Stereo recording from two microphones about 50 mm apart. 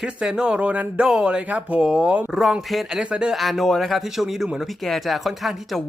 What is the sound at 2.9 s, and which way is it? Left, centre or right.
Speech, right.